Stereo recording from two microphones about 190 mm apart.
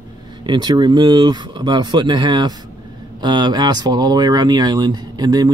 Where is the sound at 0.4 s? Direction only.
25° right (ahead or behind).